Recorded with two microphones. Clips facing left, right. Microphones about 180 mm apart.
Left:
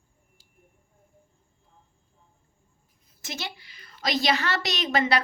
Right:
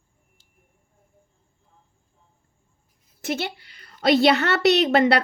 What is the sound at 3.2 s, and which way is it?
A woman's voice, 60° right (ahead or behind).